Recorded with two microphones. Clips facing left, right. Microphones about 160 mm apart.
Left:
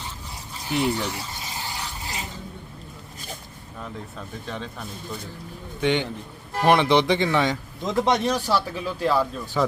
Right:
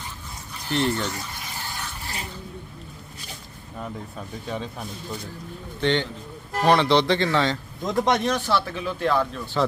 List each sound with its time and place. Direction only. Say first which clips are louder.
0.7 s speech: even; 10° left (ahead or behind)
1.3 s stir: left 2 dB; 20° left (ahead or behind)
4.4 s speech: right 3 dB; 5° right (ahead or behind)
5.8 s speech: even; 10° left (ahead or behind)
7.5 s speech: even; centre (ahead or behind)